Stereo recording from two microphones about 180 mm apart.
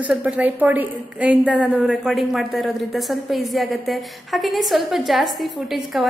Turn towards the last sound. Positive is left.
turn(degrees=0)  # may be behind; listen again after turning